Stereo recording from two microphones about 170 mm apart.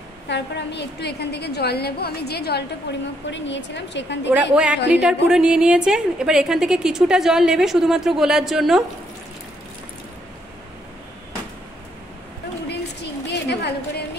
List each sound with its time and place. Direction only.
0.3 s a woman's voice: 90° left; by 2.6 s 70° left (ahead or behind)
3.3 s a woman's voice: 90° left
4.3 s a woman's voice: 10° right (ahead or behind)
12.6 s a sound: 85° left